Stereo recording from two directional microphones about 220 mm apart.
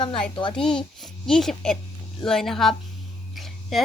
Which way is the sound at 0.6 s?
5° left (ahead or behind).